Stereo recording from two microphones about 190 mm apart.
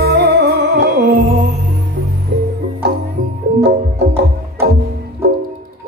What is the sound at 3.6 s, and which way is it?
Music, 60° right (ahead or behind).